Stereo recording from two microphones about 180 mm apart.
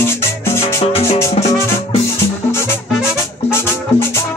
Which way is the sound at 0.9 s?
35° left (ahead or behind).